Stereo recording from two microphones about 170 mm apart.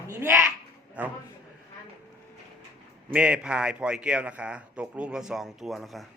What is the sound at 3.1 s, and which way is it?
A man's voice, 5° right (ahead or behind).